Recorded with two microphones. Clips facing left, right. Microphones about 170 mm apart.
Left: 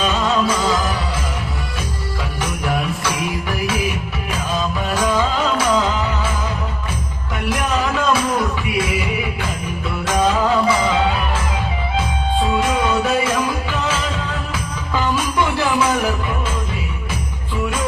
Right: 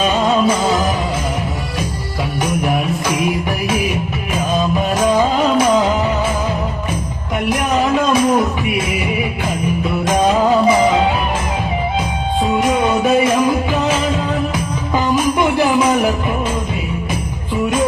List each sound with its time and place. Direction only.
0.0 s music: 20° right (ahead or behind)
4.9 s music: 20° right (ahead or behind)
7.8 s music: 20° right (ahead or behind)
10.1 s music: 20° right (ahead or behind)
12.4 s music: 20° right (ahead or behind)
14.9 s music: 20° right (ahead or behind)